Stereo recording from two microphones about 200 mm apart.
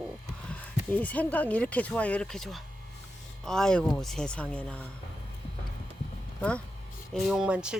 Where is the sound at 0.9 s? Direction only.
5° left (ahead or behind).